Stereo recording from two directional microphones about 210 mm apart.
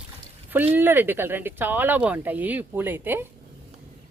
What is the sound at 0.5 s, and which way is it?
Speech, 10° right (ahead or behind).